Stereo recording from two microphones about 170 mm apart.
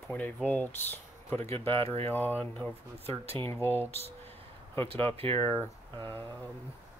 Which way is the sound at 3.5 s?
15° left (ahead or behind).